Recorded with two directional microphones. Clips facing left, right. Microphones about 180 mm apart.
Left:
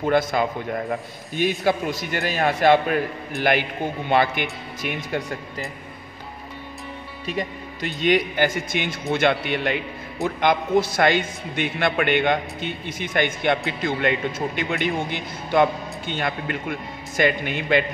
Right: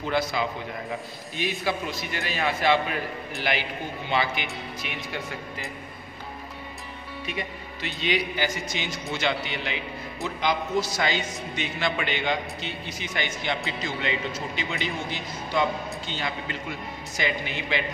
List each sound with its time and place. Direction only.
0.0 s a man's voice: 50° left (ahead or behind)
7.2 s a man's voice: 40° left (ahead or behind)